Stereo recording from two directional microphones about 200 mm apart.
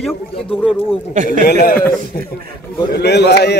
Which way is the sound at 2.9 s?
55° left (ahead or behind).